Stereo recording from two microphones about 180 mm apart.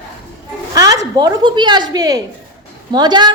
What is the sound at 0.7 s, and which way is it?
A woman's voice, 20° right (ahead or behind).